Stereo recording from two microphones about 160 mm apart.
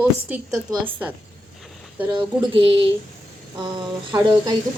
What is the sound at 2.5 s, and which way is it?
A woman's voice, 30° right (ahead or behind).